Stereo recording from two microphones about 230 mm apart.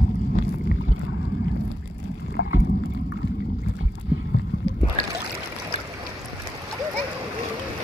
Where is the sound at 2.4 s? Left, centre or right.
Left.